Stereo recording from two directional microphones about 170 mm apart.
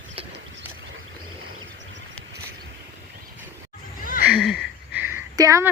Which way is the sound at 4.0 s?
55° left (ahead or behind).